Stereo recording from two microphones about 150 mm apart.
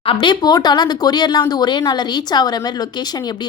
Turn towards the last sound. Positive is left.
turn(degrees=25)  # may be behind; listen again after turning